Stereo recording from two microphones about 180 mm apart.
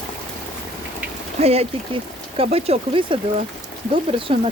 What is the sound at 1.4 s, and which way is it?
Speech, 35° right (ahead or behind).